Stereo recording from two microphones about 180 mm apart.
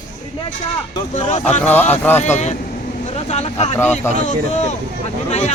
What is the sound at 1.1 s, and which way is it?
Speech, 40° left (ahead or behind).